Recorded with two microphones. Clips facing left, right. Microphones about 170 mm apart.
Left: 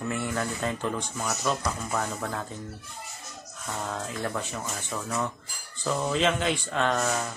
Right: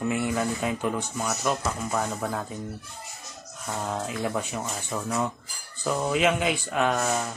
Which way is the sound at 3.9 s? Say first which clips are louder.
Right 4 dB; 15° right (ahead or behind).